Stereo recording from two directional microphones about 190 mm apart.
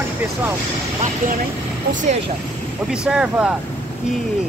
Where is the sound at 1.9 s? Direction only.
40° right (ahead or behind).